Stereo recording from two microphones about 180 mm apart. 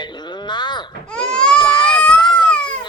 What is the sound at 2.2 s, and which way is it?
Cat, 25° left (ahead or behind).